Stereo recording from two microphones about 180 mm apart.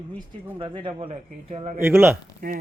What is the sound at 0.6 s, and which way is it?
A man's voice, 30° right (ahead or behind).